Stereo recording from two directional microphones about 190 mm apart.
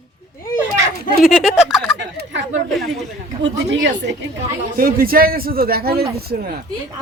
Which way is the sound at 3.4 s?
70° right (ahead or behind).